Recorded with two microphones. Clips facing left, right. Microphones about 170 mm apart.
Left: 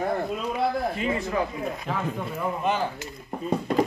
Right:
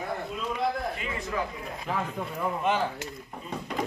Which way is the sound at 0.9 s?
30° left (ahead or behind).